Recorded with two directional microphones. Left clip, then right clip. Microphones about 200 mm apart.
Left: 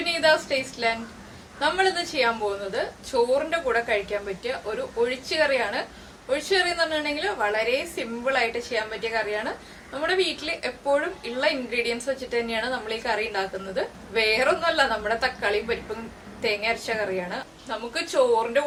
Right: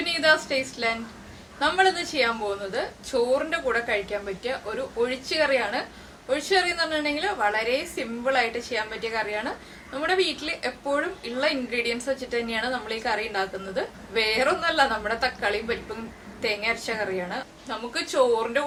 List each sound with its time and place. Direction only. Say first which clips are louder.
0.0 s a woman's voice: even; 5° right (ahead or behind)